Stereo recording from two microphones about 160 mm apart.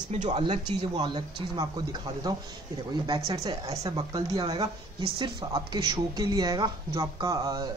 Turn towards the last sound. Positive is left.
turn(degrees=-25)  # may be behind; listen again after turning